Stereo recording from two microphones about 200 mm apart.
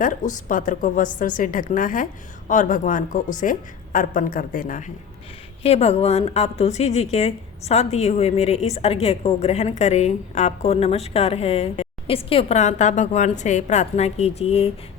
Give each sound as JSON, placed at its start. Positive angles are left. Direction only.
{"t": 0.0, "sound": "a woman's voice", "side_deg": 40}
{"t": 5.6, "sound": "a woman's voice", "side_deg": 30}